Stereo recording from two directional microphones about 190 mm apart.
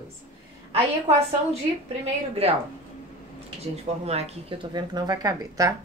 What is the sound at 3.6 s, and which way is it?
Speech, 35° right (ahead or behind).